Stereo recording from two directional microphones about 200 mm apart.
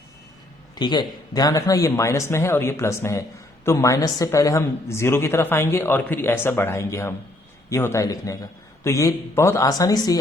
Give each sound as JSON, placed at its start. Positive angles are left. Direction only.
{"t": 0.8, "sound": "speech", "side_deg": 20}